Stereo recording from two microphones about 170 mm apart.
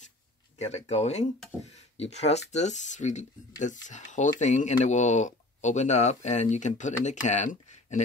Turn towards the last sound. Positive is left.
turn(degrees=45)  # may be behind; listen again after turning